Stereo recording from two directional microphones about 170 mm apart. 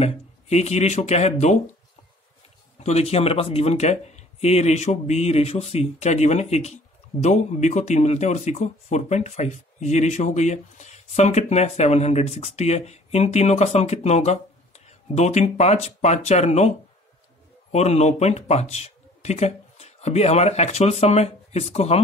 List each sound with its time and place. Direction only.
0.0 s speech: 40° left (ahead or behind)
2.8 s speech: 40° left (ahead or behind)